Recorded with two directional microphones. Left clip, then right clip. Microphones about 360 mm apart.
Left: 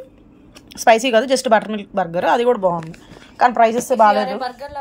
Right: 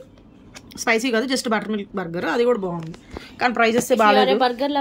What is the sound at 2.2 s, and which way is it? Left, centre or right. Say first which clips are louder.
Speech: left 4 dB; centre.